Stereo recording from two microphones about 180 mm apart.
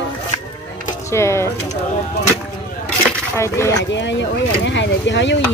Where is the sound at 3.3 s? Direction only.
15° left (ahead or behind).